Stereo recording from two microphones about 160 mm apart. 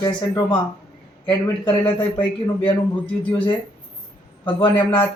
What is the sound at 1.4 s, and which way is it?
Speech, 10° left (ahead or behind).